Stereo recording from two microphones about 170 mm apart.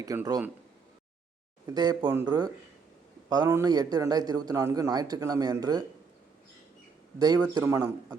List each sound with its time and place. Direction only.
0.1 s a man's voice: 20° right (ahead or behind)
1.6 s a man's voice: 25° right (ahead or behind)
7.2 s a man's voice: 25° right (ahead or behind)